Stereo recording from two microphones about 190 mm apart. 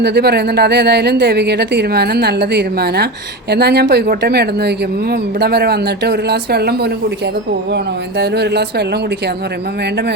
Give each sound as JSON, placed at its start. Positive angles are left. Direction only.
{"t": 0.0, "sound": "speech", "side_deg": -60}
{"t": 8.2, "sound": "speech", "side_deg": -60}